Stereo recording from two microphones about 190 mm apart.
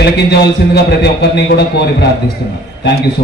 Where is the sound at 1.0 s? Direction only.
60° left (ahead or behind).